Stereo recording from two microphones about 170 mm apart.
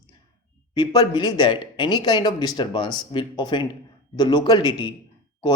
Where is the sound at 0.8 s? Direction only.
25° left (ahead or behind).